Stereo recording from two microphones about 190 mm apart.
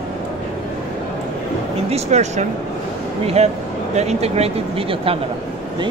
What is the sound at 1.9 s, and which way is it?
Speech, 35° right (ahead or behind).